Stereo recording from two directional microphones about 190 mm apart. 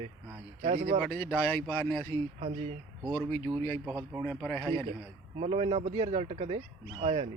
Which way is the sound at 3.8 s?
10° right (ahead or behind).